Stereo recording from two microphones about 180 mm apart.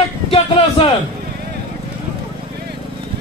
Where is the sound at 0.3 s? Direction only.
30° left (ahead or behind).